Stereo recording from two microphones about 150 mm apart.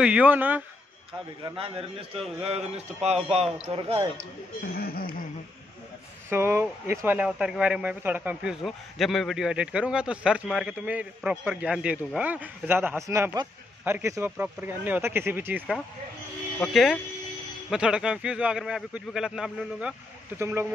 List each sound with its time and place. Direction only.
0.0 s a man's voice: 10° right (ahead or behind)
1.6 s a man's voice: 40° right (ahead or behind)
4.7 s speech: 90° left
6.3 s a man's voice: 15° right (ahead or behind)
7.2 s a man's voice: 5° right (ahead or behind)
16.5 s a man's voice: centre (ahead or behind)
20.3 s a man's voice: 15° right (ahead or behind)